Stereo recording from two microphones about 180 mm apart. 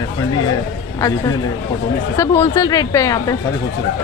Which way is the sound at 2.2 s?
20° left (ahead or behind).